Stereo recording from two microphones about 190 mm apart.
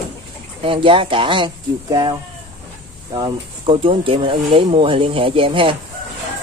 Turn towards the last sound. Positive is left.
turn(degrees=-25)  # may be behind; listen again after turning